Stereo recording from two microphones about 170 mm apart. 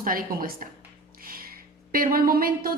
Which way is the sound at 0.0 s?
55° right (ahead or behind).